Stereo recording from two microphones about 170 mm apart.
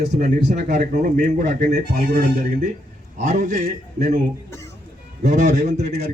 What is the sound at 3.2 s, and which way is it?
Speech, 45° right (ahead or behind).